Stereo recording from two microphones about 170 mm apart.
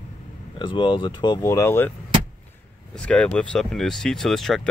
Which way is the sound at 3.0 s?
5° left (ahead or behind).